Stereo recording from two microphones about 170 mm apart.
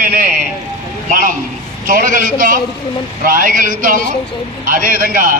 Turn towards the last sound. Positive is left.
turn(degrees=-55)  # may be behind; listen again after turning